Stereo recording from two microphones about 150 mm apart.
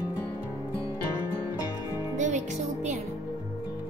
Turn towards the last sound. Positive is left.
turn(degrees=-55)  # may be behind; listen again after turning